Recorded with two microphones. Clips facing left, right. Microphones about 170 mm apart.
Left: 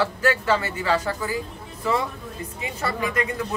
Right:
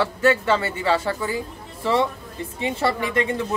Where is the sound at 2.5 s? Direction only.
30° right (ahead or behind).